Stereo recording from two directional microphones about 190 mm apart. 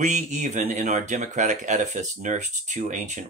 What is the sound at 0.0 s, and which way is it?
Speech, 40° right (ahead or behind).